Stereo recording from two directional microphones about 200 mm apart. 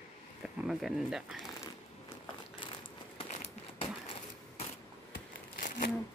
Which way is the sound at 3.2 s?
30° left (ahead or behind).